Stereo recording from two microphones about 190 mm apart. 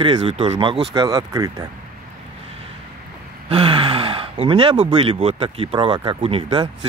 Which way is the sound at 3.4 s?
30° right (ahead or behind).